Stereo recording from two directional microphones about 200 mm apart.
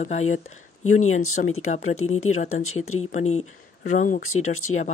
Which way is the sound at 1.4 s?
50° left (ahead or behind).